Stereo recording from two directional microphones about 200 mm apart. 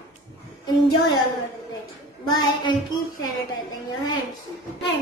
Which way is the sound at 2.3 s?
20° left (ahead or behind).